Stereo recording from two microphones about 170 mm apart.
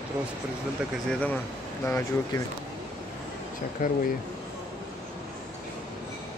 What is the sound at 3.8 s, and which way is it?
Speech, 55° left (ahead or behind).